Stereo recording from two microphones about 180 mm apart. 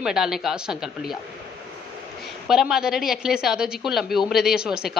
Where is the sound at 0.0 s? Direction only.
Centre (ahead or behind).